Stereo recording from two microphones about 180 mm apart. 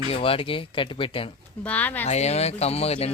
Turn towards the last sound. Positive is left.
turn(degrees=35)  # may be behind; listen again after turning